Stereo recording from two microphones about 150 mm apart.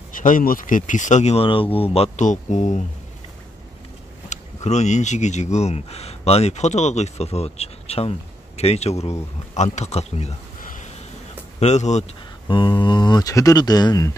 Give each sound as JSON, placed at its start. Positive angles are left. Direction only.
{"t": 0.1, "sound": "speech", "side_deg": 65}
{"t": 2.1, "sound": "speech", "side_deg": 55}
{"t": 4.3, "sound": "speech", "side_deg": 50}
{"t": 10.6, "sound": "a sound", "side_deg": 60}
{"t": 11.6, "sound": "speech", "side_deg": 50}
{"t": 12.4, "sound": "speech", "side_deg": 30}